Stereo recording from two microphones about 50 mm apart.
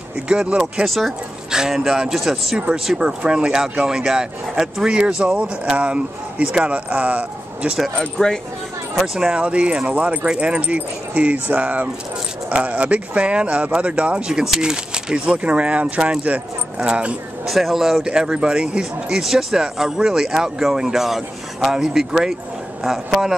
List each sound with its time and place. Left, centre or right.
0.3 s speech: centre
0.8 s speech: centre
1.5 s speech: centre
2.7 s speech: centre
8.0 s speech: centre
8.9 s speech: centre
9.3 s speech: right
17.5 s speech: centre
18.0 s speech: centre